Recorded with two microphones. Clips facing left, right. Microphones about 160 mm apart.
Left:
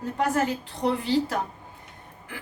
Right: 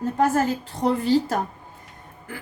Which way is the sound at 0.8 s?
40° right (ahead or behind).